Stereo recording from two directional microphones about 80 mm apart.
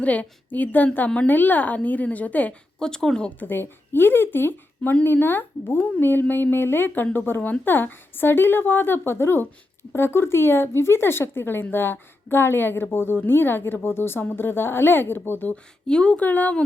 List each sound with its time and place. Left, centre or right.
0.0 s a woman's voice: centre
2.7 s speech: centre
3.4 s a woman's voice: left
15.9 s speech: centre